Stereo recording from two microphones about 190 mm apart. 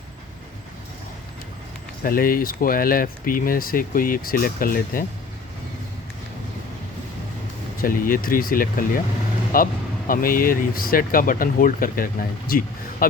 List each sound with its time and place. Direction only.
2.0 s speech: 50° left (ahead or behind)
7.8 s speech: 50° left (ahead or behind)